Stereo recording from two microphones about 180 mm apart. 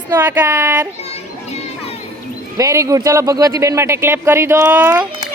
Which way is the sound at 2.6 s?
15° right (ahead or behind).